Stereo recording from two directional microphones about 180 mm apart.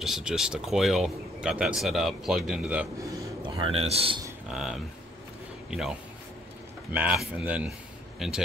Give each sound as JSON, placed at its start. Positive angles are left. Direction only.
{"t": 0.0, "sound": "speech", "side_deg": -5}
{"t": 3.0, "sound": "speech", "side_deg": -20}
{"t": 4.5, "sound": "speech", "side_deg": 0}